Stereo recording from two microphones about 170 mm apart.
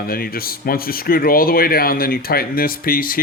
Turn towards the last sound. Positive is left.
turn(degrees=55)  # may be behind; listen again after turning